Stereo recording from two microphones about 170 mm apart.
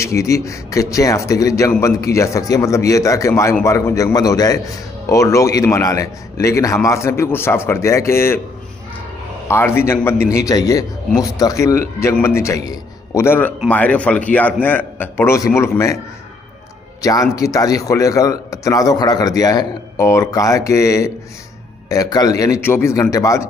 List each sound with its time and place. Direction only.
0.0 s a man's voice: 20° left (ahead or behind)
9.5 s a man's voice: 15° left (ahead or behind)
17.0 s speech: 20° left (ahead or behind)